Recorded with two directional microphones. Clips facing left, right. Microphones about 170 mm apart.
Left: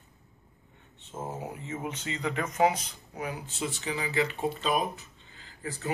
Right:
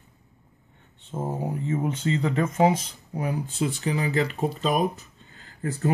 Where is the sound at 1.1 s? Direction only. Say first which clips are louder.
Right 7 dB; 35° right (ahead or behind).